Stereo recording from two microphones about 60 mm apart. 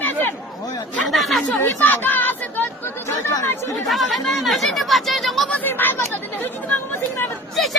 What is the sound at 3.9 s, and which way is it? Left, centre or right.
Speech, centre.